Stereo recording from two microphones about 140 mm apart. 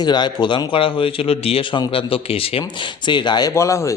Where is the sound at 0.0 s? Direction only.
30° left (ahead or behind).